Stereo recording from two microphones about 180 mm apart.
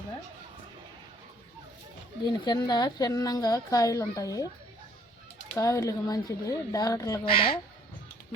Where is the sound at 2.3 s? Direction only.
25° left (ahead or behind).